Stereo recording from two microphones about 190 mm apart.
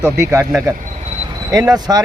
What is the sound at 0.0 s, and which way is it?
Speech, 15° right (ahead or behind).